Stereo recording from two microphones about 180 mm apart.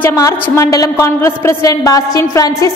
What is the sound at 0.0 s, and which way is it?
A woman's voice, 15° left (ahead or behind).